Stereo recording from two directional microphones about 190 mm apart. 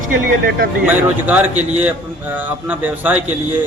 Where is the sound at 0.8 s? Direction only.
10° right (ahead or behind).